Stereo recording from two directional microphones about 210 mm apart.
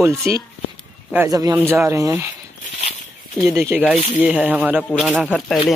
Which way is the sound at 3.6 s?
10° right (ahead or behind).